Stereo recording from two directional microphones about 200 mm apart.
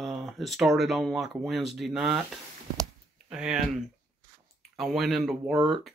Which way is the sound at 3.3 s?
5° right (ahead or behind).